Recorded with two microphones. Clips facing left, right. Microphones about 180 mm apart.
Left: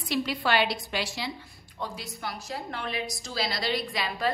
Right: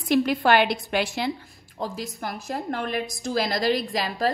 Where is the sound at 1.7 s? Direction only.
40° right (ahead or behind).